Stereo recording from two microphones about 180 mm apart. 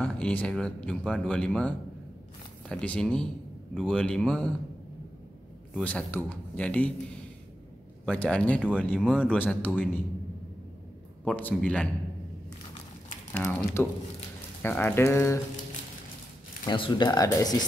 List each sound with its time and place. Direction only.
0.0 s speech: 5° left (ahead or behind)
5.8 s speech: 5° left (ahead or behind)
8.0 s speech: 5° left (ahead or behind)
11.2 s speech: 10° left (ahead or behind)
13.4 s speech: 5° left (ahead or behind)
16.6 s speech: 25° left (ahead or behind)